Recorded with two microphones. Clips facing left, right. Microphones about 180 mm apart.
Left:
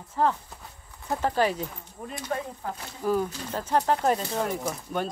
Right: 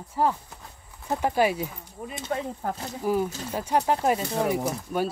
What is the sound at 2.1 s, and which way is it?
Speech, 25° right (ahead or behind).